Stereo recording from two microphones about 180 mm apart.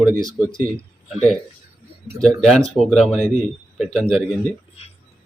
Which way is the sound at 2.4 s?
Centre (ahead or behind).